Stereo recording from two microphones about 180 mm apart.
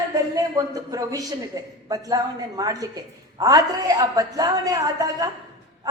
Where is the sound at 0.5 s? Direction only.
20° right (ahead or behind).